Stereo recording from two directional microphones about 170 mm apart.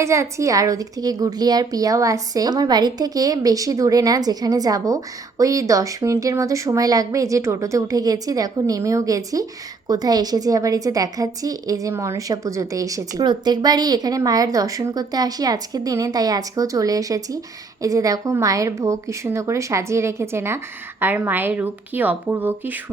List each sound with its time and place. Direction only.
0.0 s a woman's voice: 15° right (ahead or behind)